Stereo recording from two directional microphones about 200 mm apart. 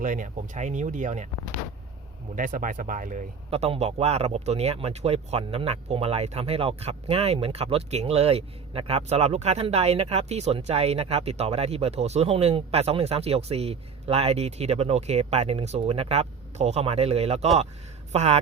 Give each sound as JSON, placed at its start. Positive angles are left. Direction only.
{"t": 0.0, "sound": "speech", "side_deg": -40}
{"t": 2.3, "sound": "speech", "side_deg": -40}